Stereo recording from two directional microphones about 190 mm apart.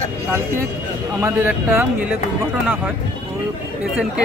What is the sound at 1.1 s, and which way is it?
Speech, 15° right (ahead or behind).